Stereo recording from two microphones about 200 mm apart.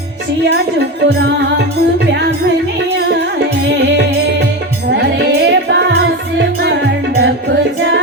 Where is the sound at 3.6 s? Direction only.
60° right (ahead or behind).